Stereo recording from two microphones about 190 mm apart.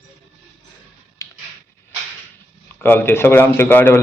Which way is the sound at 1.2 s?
15° left (ahead or behind).